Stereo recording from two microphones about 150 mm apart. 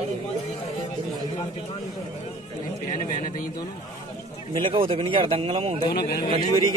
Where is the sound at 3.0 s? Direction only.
65° left (ahead or behind).